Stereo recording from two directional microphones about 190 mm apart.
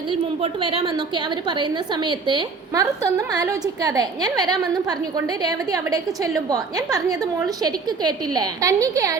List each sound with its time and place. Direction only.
0.4 s a woman's voice: 30° right (ahead or behind)